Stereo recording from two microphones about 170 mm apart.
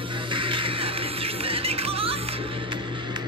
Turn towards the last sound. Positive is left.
turn(degrees=-30)  # may be behind; listen again after turning